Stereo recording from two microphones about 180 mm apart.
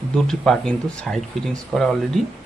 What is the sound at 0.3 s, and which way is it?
Speech, 5° left (ahead or behind).